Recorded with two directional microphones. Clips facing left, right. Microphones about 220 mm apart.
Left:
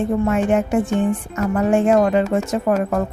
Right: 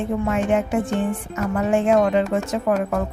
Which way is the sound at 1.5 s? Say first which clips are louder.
Left 2 dB; 45° left (ahead or behind).